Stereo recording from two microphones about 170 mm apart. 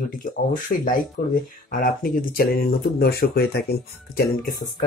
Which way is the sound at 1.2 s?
65° left (ahead or behind).